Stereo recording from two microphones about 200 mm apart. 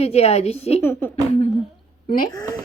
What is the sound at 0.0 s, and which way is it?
Speech, 30° left (ahead or behind).